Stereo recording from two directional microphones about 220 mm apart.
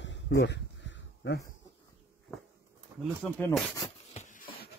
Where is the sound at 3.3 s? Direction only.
5° left (ahead or behind).